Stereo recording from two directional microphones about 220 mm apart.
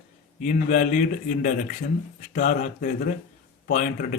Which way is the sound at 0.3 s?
35° left (ahead or behind).